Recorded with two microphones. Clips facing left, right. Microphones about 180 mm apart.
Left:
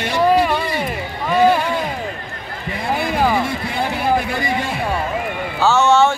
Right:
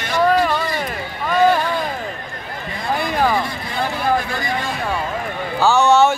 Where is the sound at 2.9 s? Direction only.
5° left (ahead or behind).